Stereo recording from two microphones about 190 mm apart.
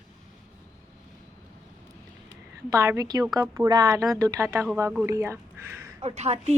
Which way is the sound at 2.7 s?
15° right (ahead or behind).